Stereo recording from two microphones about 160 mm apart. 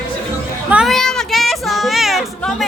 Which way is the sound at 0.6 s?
5° right (ahead or behind).